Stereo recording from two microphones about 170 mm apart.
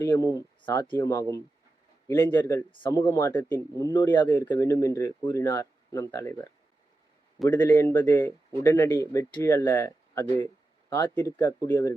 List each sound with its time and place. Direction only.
0.0 s speech: 15° left (ahead or behind)